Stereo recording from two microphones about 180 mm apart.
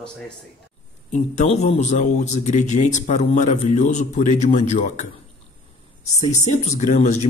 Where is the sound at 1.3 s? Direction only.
40° left (ahead or behind).